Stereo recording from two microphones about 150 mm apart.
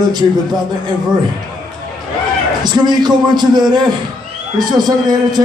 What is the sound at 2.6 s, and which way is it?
A man's voice, 30° right (ahead or behind).